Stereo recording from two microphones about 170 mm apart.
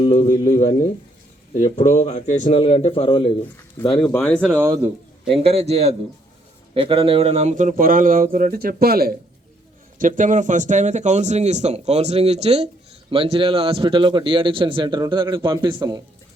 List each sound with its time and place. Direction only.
0.0 s speech: 45° left (ahead or behind)
0.3 s a man's voice: 20° left (ahead or behind)
1.5 s speech: 45° left (ahead or behind)
2.6 s a man's voice: 35° left (ahead or behind)
3.9 s speech: 5° left (ahead or behind)
4.5 s a man's voice: 15° right (ahead or behind)
5.3 s a man's voice: 35° right (ahead or behind); by 9.1 s 65° right (ahead or behind)
10.0 s a man's voice: 50° right (ahead or behind); by 16.0 s 25° right (ahead or behind)